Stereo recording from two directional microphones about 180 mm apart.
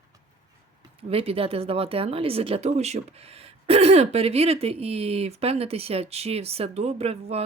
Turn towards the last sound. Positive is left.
turn(degrees=-35)  # may be behind; listen again after turning